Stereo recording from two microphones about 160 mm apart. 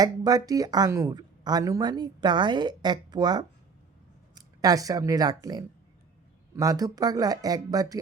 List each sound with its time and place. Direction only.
0.0 s speech: 25° right (ahead or behind)